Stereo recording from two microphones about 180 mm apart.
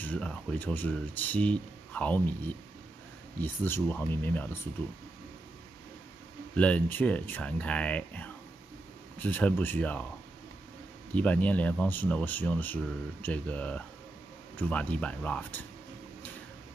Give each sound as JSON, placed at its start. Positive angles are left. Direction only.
{"t": 0.0, "sound": "speech", "side_deg": 5}
{"t": 6.5, "sound": "speech", "side_deg": 5}
{"t": 11.1, "sound": "speech", "side_deg": 10}